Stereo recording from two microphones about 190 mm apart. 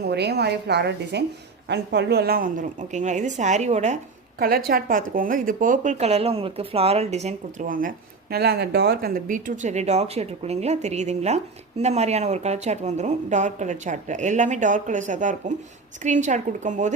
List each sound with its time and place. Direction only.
0.0 s a woman's voice: 60° right (ahead or behind); by 3.9 s 35° right (ahead or behind)
4.4 s a woman's voice: 50° right (ahead or behind)